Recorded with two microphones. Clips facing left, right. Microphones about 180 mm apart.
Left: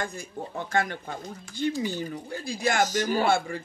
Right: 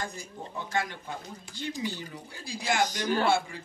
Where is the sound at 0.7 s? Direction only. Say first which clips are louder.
Left 4 dB; 55° left (ahead or behind).